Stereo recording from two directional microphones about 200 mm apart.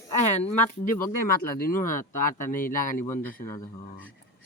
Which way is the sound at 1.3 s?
45° left (ahead or behind).